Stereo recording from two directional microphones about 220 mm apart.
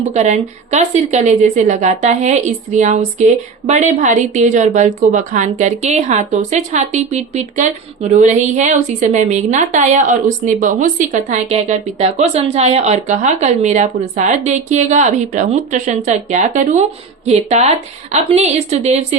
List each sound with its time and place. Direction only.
0.0 s a woman's voice: 30° right (ahead or behind)